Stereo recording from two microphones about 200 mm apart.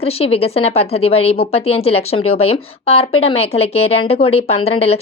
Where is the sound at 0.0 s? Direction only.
30° left (ahead or behind).